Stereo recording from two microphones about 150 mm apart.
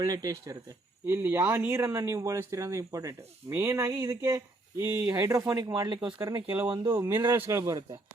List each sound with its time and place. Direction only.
0.0 s speech: 25° right (ahead or behind)
6.2 s speech: 20° right (ahead or behind)